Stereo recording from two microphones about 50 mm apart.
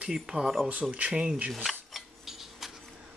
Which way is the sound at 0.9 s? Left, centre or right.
Right.